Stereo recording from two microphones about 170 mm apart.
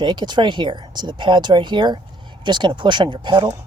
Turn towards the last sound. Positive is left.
turn(degrees=-30)  # may be behind; listen again after turning